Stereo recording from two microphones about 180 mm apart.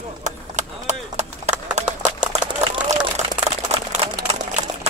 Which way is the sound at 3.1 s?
35° right (ahead or behind).